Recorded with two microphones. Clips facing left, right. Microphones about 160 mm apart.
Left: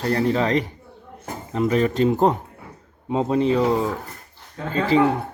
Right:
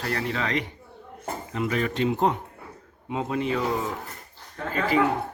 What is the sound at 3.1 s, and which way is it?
Speech, 30° left (ahead or behind).